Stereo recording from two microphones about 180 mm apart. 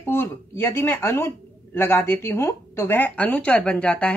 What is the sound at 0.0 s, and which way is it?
A woman's voice, 15° left (ahead or behind).